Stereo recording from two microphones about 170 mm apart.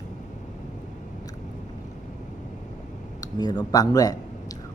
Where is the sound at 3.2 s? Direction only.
25° left (ahead or behind).